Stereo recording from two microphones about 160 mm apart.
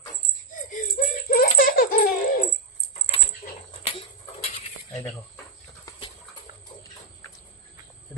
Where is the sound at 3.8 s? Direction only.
40° left (ahead or behind).